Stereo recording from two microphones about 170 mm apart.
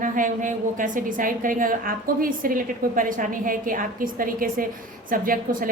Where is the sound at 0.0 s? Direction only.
50° right (ahead or behind).